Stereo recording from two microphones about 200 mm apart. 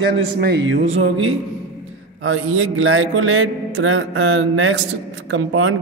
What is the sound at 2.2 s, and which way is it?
A man's voice, 90° right.